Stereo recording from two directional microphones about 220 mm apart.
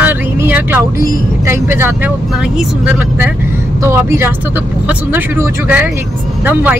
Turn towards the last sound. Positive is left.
turn(degrees=-10)  # may be behind; listen again after turning